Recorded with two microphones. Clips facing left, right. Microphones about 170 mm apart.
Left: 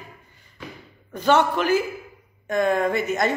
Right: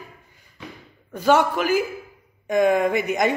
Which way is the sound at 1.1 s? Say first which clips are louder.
Right 1 dB; 10° right (ahead or behind).